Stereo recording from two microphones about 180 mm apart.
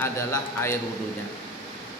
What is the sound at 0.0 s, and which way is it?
Speech, 15° left (ahead or behind).